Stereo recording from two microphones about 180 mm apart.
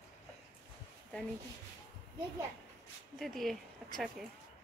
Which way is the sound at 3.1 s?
Centre (ahead or behind).